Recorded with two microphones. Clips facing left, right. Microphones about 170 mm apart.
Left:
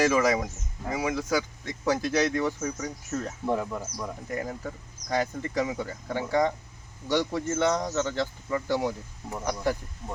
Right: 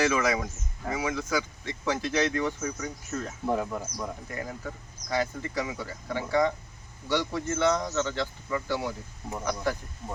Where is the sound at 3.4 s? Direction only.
Centre (ahead or behind).